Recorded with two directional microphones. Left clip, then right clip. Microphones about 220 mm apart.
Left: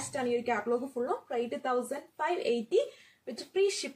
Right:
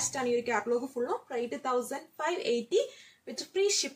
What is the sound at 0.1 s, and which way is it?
Speech, 15° right (ahead or behind).